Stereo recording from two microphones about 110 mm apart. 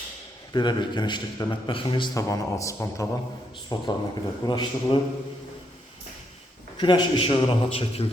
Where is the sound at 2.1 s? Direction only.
30° left (ahead or behind).